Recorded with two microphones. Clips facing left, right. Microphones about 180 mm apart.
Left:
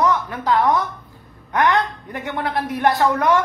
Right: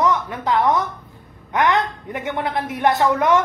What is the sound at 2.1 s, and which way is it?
A man's voice, 20° right (ahead or behind).